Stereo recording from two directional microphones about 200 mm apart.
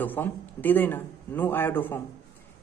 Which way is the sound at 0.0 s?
10° left (ahead or behind).